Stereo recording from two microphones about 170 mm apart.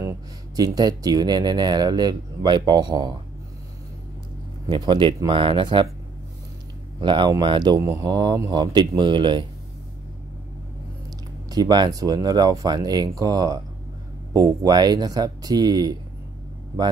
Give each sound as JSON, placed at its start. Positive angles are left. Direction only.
{"t": 0.0, "sound": "speech", "side_deg": -20}
{"t": 4.6, "sound": "speech", "side_deg": -30}
{"t": 7.0, "sound": "speech", "side_deg": -30}
{"t": 11.5, "sound": "speech", "side_deg": -25}